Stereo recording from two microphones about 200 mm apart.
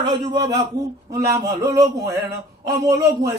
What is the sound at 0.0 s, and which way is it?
Speech, 20° right (ahead or behind).